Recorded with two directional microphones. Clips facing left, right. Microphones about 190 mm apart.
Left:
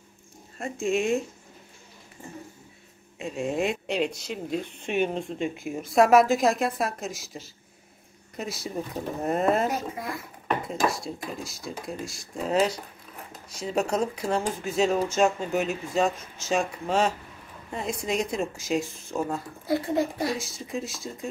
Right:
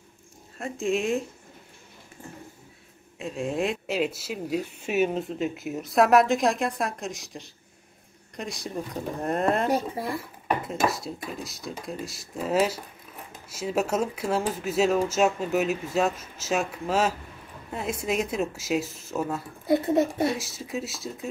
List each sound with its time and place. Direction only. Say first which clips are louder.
0.6 s speech: even; centre (ahead or behind)
3.2 s speech: even; centre (ahead or behind)
9.7 s speech: right 4 dB; 30° right (ahead or behind)
10.6 s speech: even; centre (ahead or behind)
19.6 s a child's voice: right 4 dB; 20° right (ahead or behind)
20.3 s speech: even; 5° right (ahead or behind)